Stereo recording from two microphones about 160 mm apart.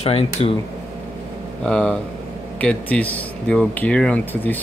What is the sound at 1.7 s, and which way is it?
Speech, 5° left (ahead or behind).